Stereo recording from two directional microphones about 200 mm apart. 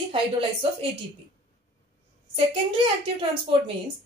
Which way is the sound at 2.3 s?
30° right (ahead or behind).